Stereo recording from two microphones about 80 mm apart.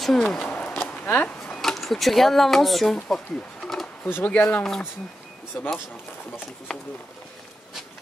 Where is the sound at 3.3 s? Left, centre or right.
Centre.